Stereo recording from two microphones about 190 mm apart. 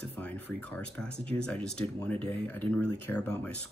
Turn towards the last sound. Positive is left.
turn(degrees=5)  # may be behind; listen again after turning